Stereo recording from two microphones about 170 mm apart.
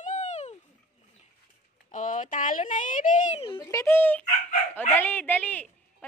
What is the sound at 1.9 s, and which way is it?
Speech, 50° left (ahead or behind).